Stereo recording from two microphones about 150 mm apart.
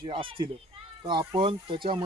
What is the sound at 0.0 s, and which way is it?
Speech, 35° right (ahead or behind).